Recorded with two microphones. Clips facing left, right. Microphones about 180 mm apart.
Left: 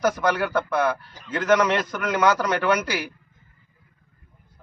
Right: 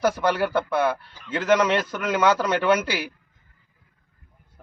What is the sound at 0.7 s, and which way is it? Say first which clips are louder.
A man's voice: even; 25° right (ahead or behind).